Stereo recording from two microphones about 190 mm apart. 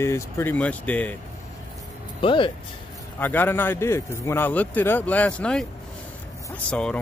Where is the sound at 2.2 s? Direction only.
25° left (ahead or behind).